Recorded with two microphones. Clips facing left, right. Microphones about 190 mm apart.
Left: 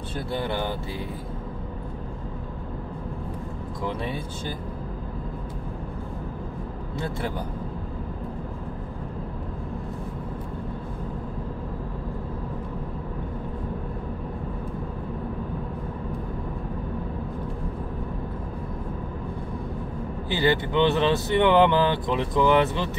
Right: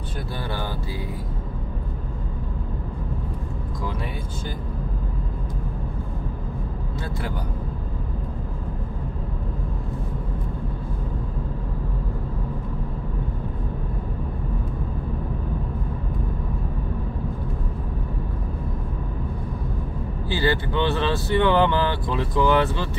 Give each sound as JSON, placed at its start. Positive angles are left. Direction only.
{"t": 0.3, "sound": "speech", "side_deg": 20}
{"t": 20.2, "sound": "speech", "side_deg": 20}